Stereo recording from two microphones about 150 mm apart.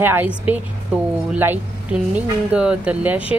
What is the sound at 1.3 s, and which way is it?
Speech, 15° right (ahead or behind).